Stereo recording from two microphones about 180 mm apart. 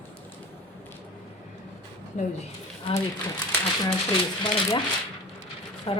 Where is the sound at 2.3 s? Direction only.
35° left (ahead or behind).